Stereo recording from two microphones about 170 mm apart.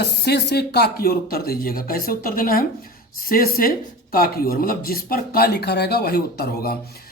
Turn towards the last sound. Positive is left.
turn(degrees=65)  # may be behind; listen again after turning